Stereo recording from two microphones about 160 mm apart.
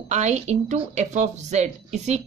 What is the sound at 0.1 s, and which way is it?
A woman's voice, 45° right (ahead or behind).